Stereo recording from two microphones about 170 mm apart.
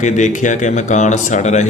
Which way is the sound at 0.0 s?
45° left (ahead or behind).